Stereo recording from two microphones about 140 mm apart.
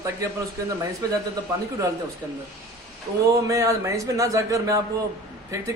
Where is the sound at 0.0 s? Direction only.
25° right (ahead or behind).